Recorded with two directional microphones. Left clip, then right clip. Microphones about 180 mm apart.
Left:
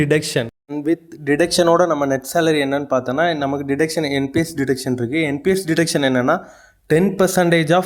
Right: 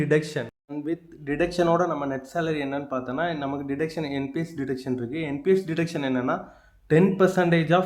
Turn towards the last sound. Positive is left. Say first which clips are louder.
# left 6 dB
turn(degrees=45)  # may be behind; listen again after turning